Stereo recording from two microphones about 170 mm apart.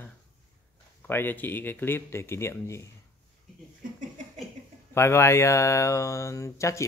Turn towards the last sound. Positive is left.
turn(degrees=15)  # may be behind; listen again after turning